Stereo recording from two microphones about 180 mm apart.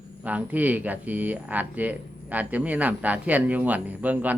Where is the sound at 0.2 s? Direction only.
10° right (ahead or behind).